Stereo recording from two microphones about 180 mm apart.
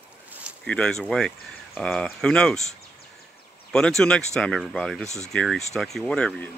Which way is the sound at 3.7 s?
5° left (ahead or behind).